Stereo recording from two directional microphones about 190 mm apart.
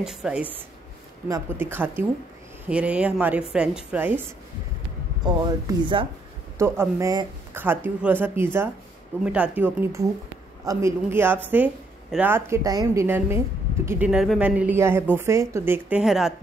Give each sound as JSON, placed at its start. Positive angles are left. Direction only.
{"t": 0.0, "sound": "speech", "side_deg": -5}
{"t": 5.2, "sound": "speech", "side_deg": -25}